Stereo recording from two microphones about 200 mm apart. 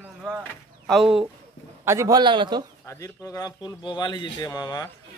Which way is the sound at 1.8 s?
15° right (ahead or behind).